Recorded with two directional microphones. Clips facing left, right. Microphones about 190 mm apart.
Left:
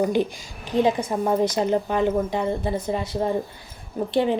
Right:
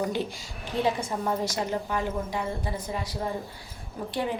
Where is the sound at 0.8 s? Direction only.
15° left (ahead or behind).